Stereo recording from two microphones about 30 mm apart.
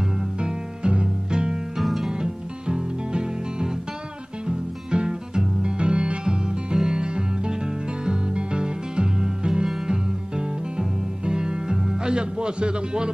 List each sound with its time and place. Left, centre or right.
0.4 s music: right
1.8 s music: centre
2.0 s music: right